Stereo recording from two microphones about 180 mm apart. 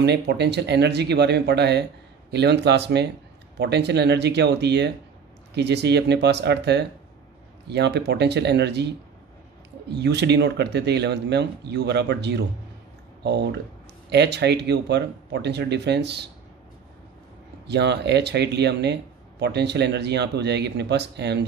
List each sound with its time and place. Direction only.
0.0 s speech: 70° right (ahead or behind)
17.6 s speech: 70° right (ahead or behind)